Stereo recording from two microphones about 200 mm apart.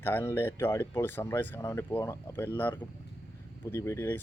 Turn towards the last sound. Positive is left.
turn(degrees=15)  # may be behind; listen again after turning